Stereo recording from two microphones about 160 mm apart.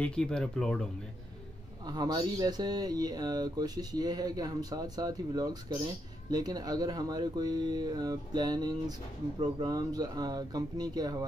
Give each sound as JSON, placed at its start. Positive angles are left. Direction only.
{"t": 0.0, "sound": "speech", "side_deg": 5}
{"t": 1.9, "sound": "speech", "side_deg": -25}